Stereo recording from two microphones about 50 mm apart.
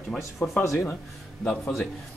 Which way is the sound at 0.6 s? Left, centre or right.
Left.